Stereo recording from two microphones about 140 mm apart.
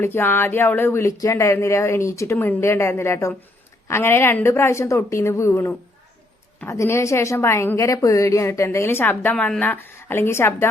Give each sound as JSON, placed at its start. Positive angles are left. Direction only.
{"t": 0.0, "sound": "a woman's voice", "side_deg": 15}